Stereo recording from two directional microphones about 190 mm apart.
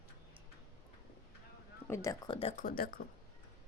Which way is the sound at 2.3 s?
30° left (ahead or behind).